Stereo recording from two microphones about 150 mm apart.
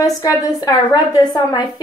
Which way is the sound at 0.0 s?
25° left (ahead or behind).